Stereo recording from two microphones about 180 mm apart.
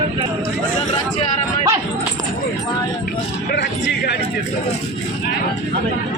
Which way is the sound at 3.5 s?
80° left.